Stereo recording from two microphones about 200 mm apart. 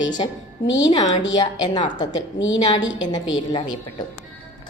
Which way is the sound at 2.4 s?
70° left (ahead or behind).